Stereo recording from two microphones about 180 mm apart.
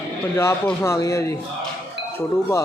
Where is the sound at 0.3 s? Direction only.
15° left (ahead or behind).